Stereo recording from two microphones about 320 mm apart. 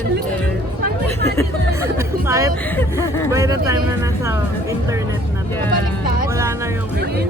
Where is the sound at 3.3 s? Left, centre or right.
Centre.